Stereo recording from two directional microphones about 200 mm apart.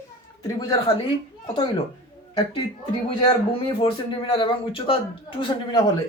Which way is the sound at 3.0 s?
30° left (ahead or behind).